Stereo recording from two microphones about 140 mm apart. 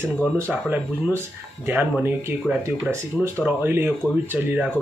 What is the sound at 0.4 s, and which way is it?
Speech, 10° right (ahead or behind).